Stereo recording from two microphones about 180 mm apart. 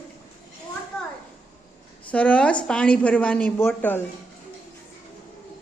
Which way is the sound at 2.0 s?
5° left (ahead or behind).